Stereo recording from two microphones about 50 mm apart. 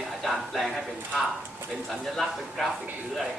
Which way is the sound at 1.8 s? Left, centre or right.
Centre.